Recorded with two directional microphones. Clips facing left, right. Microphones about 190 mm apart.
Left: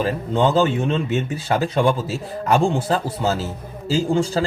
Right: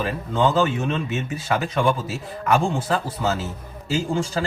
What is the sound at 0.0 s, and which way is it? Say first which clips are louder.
A man's voice: left 2 dB; 30° left (ahead or behind).